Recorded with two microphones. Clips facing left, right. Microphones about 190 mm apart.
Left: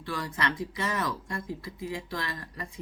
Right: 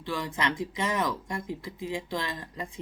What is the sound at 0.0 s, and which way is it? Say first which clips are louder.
Speech: right 2 dB; 20° right (ahead or behind).